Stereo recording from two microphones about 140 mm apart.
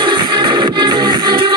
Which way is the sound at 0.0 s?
35° right (ahead or behind).